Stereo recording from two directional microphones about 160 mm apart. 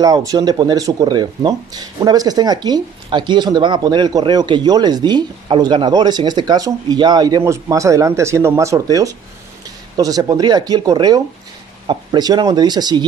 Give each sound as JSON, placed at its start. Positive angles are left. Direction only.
{"t": 0.0, "sound": "speech", "side_deg": -20}